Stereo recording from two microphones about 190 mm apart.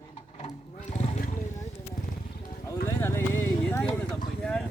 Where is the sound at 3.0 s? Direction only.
10° left (ahead or behind).